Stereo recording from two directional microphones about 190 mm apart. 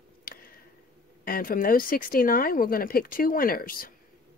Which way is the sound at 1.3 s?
50° left (ahead or behind).